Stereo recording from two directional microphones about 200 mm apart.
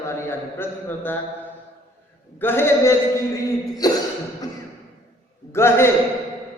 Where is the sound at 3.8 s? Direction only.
20° left (ahead or behind).